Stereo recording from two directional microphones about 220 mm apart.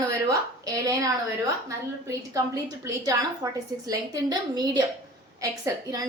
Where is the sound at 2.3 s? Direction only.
15° right (ahead or behind).